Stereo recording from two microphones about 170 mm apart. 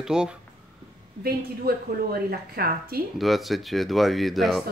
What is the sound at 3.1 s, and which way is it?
Speech, centre (ahead or behind).